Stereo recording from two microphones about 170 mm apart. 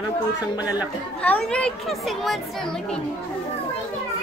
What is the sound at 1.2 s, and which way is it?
Speech, 5° left (ahead or behind).